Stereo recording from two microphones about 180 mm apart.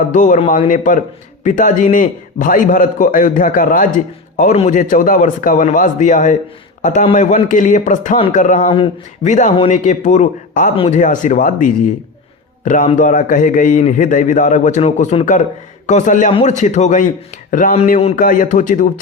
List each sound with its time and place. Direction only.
0.1 s a man's voice: 45° left (ahead or behind)